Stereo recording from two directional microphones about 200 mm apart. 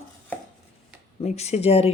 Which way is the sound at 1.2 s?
35° left (ahead or behind).